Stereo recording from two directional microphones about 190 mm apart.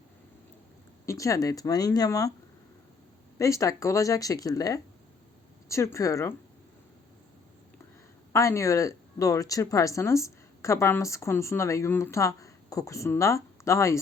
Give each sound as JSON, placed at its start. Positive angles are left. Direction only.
{"t": 1.0, "sound": "speech", "side_deg": 15}
{"t": 3.3, "sound": "speech", "side_deg": 15}
{"t": 8.3, "sound": "speech", "side_deg": 15}